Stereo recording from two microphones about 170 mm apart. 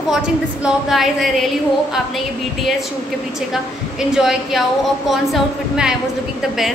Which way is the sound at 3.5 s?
5° right (ahead or behind).